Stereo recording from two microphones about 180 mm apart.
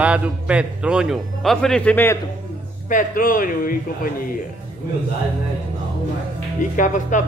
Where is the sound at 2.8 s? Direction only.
50° left (ahead or behind).